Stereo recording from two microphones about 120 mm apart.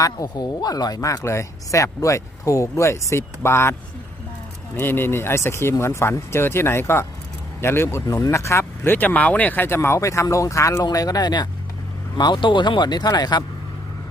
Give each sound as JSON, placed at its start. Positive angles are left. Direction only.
{"t": 0.0, "sound": "speech", "side_deg": 30}
{"t": 4.8, "sound": "speech", "side_deg": 20}